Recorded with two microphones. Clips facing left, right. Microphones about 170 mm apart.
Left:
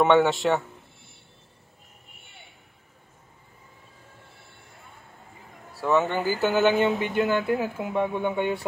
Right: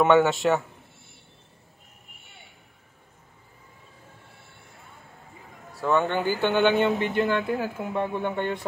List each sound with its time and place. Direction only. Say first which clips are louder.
0.0 s speech: even; 5° right (ahead or behind)
5.8 s speech: even; 5° left (ahead or behind)